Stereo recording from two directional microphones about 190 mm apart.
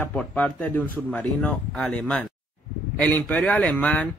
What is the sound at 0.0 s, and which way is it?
Speech, 10° left (ahead or behind).